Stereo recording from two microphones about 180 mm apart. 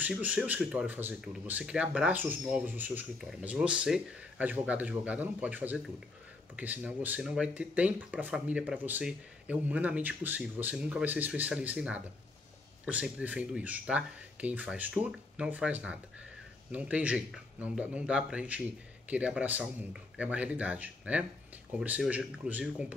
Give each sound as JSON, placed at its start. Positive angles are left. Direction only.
{"t": 0.0, "sound": "speech", "side_deg": -10}